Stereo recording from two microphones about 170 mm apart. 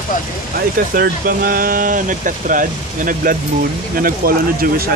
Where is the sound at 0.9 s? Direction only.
60° right (ahead or behind).